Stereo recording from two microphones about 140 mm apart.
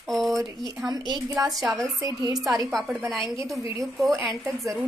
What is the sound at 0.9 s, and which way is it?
Speech, 30° right (ahead or behind).